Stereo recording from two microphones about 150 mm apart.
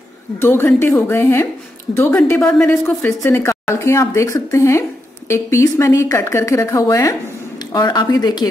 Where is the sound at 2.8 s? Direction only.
15° left (ahead or behind).